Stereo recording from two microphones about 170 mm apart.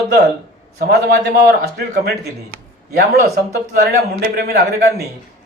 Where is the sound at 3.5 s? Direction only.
70° right (ahead or behind).